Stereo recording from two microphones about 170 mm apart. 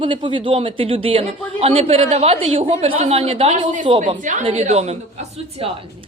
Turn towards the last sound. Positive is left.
turn(degrees=-35)  # may be behind; listen again after turning